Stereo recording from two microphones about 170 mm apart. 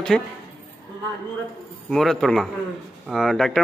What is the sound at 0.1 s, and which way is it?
Speech, 5° left (ahead or behind).